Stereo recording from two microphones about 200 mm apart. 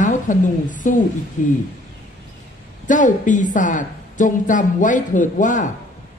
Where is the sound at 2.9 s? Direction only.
40° left (ahead or behind).